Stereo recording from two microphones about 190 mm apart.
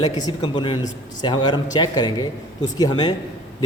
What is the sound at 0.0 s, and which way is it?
A man's voice, 20° left (ahead or behind).